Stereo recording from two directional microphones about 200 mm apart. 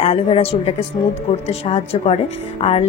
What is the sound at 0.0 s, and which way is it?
A woman's voice, 30° left (ahead or behind).